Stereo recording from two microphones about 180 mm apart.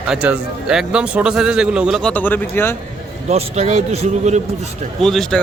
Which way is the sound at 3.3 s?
35° right (ahead or behind).